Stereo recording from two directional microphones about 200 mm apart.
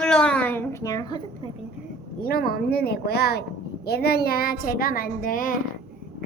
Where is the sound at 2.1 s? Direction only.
45° left (ahead or behind).